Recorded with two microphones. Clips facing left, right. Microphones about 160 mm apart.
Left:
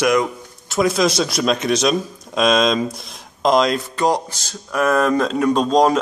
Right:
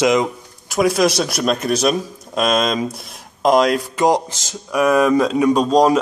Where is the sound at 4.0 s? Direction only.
20° right (ahead or behind).